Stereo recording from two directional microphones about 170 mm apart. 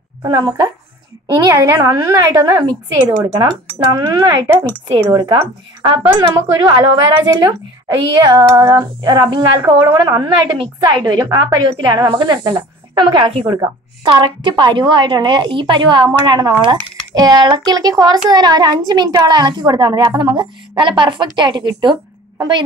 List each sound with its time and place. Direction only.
0.2 s a woman's voice: 25° right (ahead or behind)
8.5 s a woman's voice: 20° right (ahead or behind)